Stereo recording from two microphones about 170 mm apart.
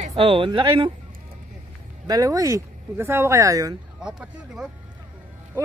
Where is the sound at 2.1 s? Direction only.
20° right (ahead or behind).